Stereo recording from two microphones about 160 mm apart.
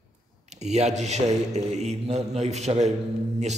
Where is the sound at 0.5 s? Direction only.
45° right (ahead or behind).